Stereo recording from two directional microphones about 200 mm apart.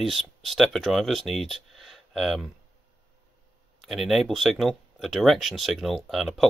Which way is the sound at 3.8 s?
Centre (ahead or behind).